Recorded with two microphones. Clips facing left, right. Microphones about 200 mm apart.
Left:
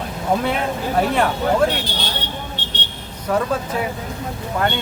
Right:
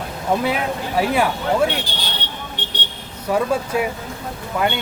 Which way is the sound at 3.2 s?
10° right (ahead or behind).